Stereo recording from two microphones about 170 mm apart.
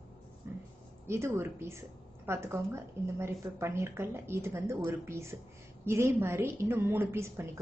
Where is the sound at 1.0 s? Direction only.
15° right (ahead or behind).